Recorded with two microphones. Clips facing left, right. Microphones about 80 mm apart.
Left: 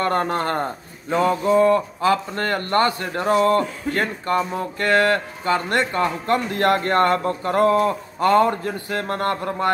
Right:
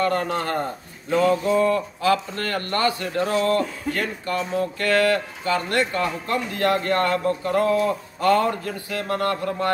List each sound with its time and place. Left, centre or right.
0.0 s a man's voice: left
6.2 s a man's voice: left
8.2 s a man's voice: left